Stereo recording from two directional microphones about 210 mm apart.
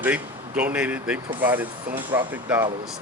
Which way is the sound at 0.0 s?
5° right (ahead or behind).